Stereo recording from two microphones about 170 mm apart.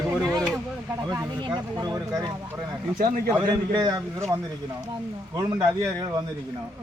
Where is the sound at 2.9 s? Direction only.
60° right (ahead or behind).